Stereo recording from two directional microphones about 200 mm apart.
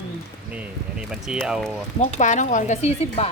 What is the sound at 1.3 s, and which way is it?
Speech, centre (ahead or behind).